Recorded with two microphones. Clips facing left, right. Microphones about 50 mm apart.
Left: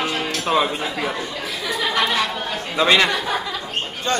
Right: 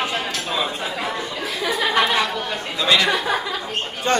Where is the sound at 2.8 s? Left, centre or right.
Left.